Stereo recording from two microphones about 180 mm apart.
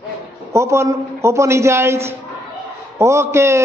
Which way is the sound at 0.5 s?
15° right (ahead or behind).